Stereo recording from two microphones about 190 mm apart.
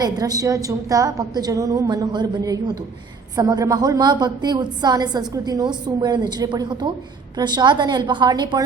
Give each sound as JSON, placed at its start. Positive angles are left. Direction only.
{"t": 0.0, "sound": "a woman's voice", "side_deg": -20}